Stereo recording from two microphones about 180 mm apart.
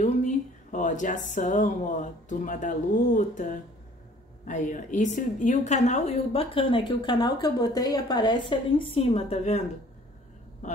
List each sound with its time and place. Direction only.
0.0 s a woman's voice: 45° left (ahead or behind)